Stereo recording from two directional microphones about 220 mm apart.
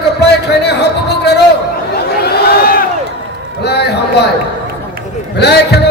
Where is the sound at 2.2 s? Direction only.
45° left (ahead or behind).